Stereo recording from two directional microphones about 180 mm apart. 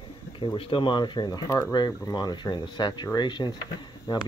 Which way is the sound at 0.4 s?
30° left (ahead or behind).